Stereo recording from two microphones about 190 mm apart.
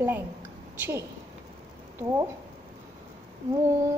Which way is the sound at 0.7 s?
15° right (ahead or behind).